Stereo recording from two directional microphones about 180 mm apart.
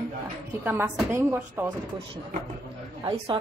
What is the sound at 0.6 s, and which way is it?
Speech, 10° right (ahead or behind).